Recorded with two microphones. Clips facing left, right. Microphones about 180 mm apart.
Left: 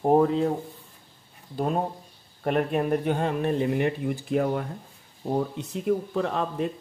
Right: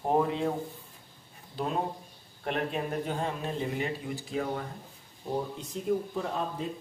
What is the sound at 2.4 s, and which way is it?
Speech, 50° left (ahead or behind).